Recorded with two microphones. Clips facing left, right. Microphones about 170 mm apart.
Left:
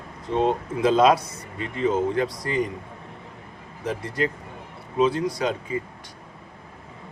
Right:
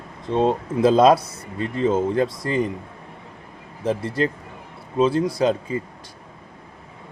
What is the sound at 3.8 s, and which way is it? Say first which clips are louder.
Speech: right 4 dB; 30° right (ahead or behind).